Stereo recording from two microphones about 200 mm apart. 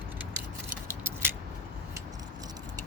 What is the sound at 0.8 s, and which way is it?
Scissors, 10° right (ahead or behind).